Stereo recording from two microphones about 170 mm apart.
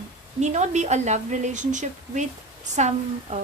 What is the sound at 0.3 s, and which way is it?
Speech, 40° right (ahead or behind).